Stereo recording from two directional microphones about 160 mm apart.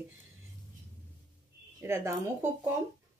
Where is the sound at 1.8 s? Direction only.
15° right (ahead or behind).